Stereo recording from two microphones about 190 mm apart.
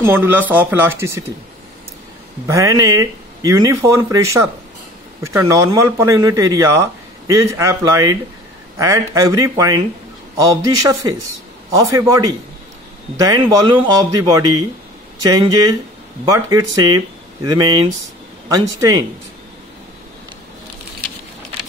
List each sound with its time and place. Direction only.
0.0 s speech: 10° right (ahead or behind)
2.4 s speech: 15° right (ahead or behind)